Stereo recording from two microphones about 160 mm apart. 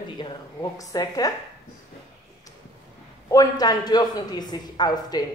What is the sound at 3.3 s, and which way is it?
A man's voice, 25° left (ahead or behind).